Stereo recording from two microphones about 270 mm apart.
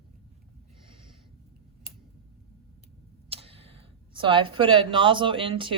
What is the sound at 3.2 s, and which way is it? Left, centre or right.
Speech, right.